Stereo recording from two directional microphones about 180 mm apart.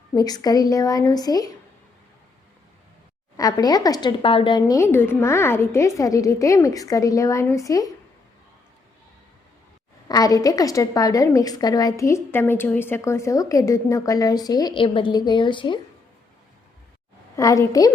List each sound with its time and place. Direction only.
0.1 s a woman's voice: 20° left (ahead or behind)
3.3 s a woman's voice: 20° left (ahead or behind)
10.1 s a woman's voice: 20° left (ahead or behind)
17.3 s a woman's voice: 15° left (ahead or behind)